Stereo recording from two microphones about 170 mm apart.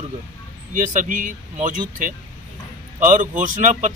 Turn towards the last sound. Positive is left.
turn(degrees=-50)  # may be behind; listen again after turning